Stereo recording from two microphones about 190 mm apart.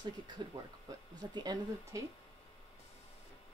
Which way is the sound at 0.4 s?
25° right (ahead or behind).